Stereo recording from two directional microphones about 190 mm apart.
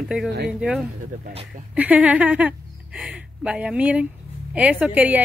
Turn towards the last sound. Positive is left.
turn(degrees=-10)  # may be behind; listen again after turning